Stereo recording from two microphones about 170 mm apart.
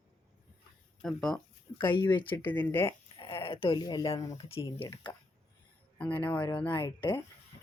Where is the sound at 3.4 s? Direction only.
30° left (ahead or behind).